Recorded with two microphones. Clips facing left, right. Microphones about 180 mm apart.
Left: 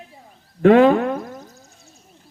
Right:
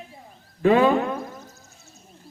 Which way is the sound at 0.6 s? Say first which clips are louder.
Left 5 dB; 60° left (ahead or behind).